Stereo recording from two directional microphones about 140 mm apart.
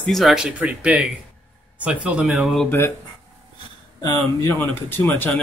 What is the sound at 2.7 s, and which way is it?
Speech, 15° left (ahead or behind).